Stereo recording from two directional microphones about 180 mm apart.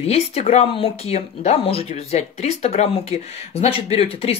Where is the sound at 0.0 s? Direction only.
35° left (ahead or behind).